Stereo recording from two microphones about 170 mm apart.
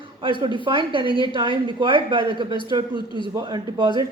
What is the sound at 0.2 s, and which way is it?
Speech, 30° right (ahead or behind).